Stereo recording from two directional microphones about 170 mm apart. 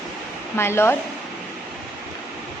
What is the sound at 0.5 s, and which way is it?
Speech, 15° left (ahead or behind).